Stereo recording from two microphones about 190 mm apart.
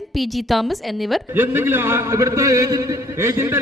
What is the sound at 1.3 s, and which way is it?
A man's voice, 10° right (ahead or behind).